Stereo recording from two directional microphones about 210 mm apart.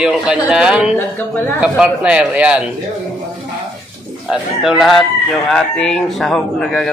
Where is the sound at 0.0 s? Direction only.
5° right (ahead or behind).